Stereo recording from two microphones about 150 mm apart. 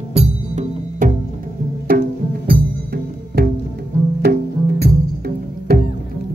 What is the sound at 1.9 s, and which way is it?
Music, 80° right.